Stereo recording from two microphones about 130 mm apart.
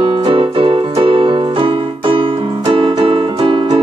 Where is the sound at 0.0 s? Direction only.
45° right (ahead or behind).